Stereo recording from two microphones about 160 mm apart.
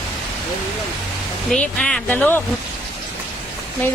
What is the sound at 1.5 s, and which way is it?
Speech, 5° left (ahead or behind).